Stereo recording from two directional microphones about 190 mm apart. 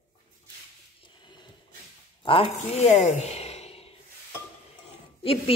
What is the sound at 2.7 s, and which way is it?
Speech, 35° left (ahead or behind).